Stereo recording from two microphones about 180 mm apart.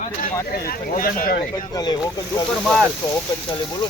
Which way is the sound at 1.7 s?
20° left (ahead or behind).